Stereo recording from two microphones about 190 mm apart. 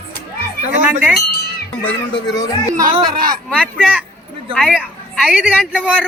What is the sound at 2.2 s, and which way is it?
Speech, 20° left (ahead or behind).